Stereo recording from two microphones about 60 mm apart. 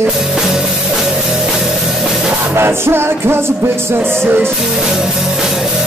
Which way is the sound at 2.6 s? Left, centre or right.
Right.